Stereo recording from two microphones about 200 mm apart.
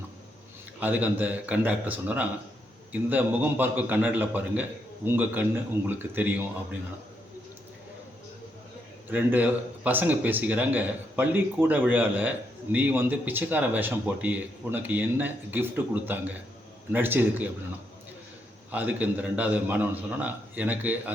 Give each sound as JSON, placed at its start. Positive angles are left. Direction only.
{"t": 0.8, "sound": "speech", "side_deg": -10}
{"t": 9.0, "sound": "speech", "side_deg": -10}
{"t": 18.7, "sound": "speech", "side_deg": -10}